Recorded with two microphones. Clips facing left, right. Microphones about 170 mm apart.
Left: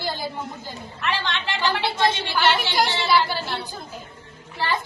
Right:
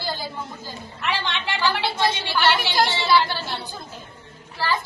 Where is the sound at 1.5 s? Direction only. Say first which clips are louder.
Right 1 dB; 20° left (ahead or behind).